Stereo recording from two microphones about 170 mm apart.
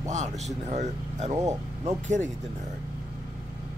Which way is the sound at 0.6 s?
40° right (ahead or behind).